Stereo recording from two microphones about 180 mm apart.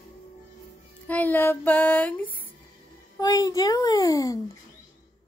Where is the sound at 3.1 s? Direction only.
20° left (ahead or behind).